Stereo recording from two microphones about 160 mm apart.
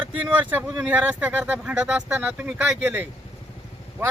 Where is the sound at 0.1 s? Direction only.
10° right (ahead or behind).